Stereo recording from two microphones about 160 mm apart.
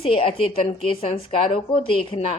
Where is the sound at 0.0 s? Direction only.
35° left (ahead or behind).